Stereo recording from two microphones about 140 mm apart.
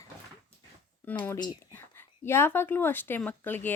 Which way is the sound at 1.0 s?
10° left (ahead or behind).